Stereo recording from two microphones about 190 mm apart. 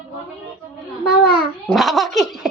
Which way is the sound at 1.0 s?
55° left (ahead or behind).